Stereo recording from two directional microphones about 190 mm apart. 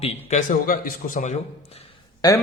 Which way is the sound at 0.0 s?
40° left (ahead or behind).